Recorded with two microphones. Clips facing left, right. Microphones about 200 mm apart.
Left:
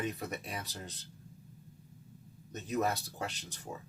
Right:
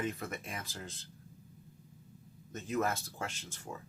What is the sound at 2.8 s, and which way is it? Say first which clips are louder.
Speech: left 1 dB; 15° left (ahead or behind).